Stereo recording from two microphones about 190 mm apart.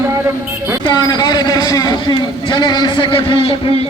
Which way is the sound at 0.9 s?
20° left (ahead or behind).